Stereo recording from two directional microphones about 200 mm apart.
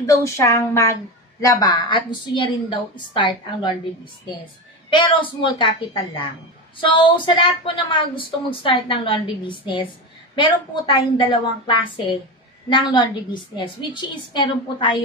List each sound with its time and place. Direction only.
0.0 s a woman's voice: 15° left (ahead or behind)
6.8 s a woman's voice: 25° left (ahead or behind)